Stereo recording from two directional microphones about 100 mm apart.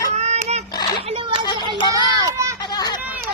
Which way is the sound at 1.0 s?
70° right (ahead or behind).